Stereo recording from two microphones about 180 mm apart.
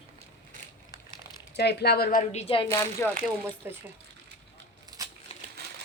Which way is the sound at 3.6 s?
10° right (ahead or behind).